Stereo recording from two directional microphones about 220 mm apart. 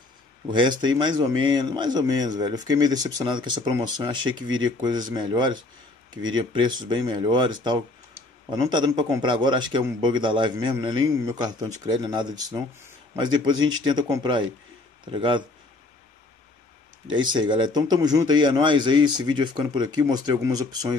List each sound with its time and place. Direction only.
0.5 s speech: 20° right (ahead or behind)
17.1 s speech: 20° right (ahead or behind)